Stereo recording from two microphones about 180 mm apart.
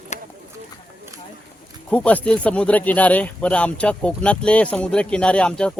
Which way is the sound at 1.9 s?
10° left (ahead or behind).